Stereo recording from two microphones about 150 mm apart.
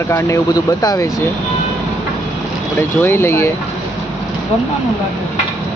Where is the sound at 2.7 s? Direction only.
15° left (ahead or behind).